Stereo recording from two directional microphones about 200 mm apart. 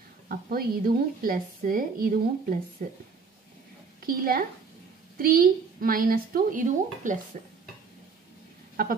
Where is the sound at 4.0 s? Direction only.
45° right (ahead or behind).